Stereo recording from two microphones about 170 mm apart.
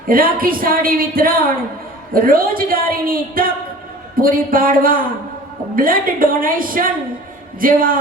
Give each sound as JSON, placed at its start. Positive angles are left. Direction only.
{"t": 0.1, "sound": "a woman's voice", "side_deg": -55}